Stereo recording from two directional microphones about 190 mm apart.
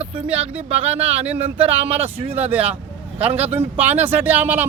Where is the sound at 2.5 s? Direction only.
10° right (ahead or behind).